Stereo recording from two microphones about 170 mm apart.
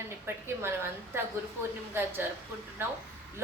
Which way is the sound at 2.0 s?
15° right (ahead or behind).